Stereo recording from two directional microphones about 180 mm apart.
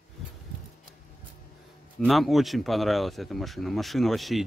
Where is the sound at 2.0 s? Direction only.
Centre (ahead or behind).